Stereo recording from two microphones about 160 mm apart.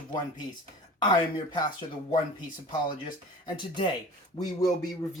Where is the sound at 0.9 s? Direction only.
25° left (ahead or behind).